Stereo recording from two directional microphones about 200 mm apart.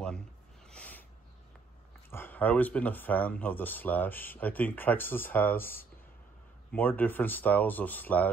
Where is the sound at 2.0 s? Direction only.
10° left (ahead or behind).